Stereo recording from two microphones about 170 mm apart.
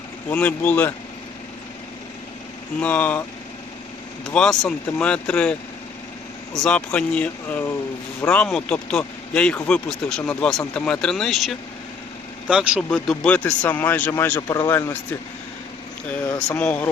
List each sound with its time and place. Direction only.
0.3 s speech: 10° left (ahead or behind)
2.8 s speech: 10° left (ahead or behind)
4.3 s speech: 5° left (ahead or behind)
12.9 s speech: 5° left (ahead or behind)
16.5 s speech: 5° left (ahead or behind)